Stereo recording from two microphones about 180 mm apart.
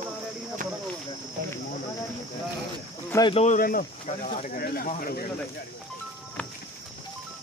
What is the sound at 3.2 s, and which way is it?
Speech, 35° left (ahead or behind).